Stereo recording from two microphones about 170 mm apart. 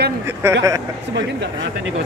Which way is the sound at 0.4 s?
15° right (ahead or behind).